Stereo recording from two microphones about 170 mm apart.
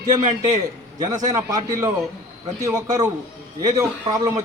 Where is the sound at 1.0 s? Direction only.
20° right (ahead or behind).